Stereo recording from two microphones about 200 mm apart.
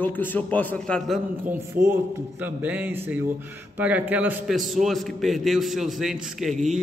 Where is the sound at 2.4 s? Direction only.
10° right (ahead or behind).